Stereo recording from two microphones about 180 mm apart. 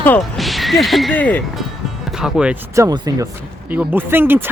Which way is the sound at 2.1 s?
5° right (ahead or behind).